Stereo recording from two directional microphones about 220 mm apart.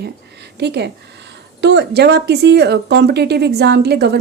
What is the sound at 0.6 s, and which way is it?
A woman's voice, 50° right (ahead or behind).